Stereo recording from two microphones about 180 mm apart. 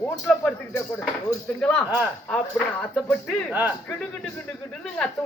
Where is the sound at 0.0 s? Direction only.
10° left (ahead or behind).